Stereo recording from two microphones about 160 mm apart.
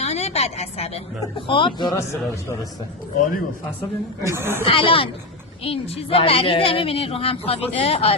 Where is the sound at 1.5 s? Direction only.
30° left (ahead or behind).